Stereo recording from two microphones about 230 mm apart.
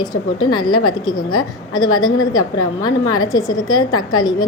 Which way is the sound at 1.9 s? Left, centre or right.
Centre.